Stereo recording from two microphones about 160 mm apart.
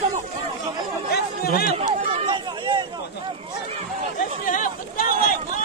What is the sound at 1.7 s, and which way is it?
Run, 40° right (ahead or behind).